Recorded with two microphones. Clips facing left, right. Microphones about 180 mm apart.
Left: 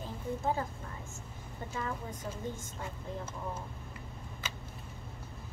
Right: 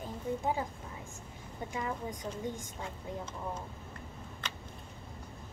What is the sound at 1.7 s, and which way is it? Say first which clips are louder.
Speech: right 1 dB; 15° right (ahead or behind).